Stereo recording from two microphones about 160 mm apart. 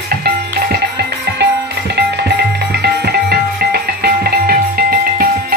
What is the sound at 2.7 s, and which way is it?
Music, 85° right.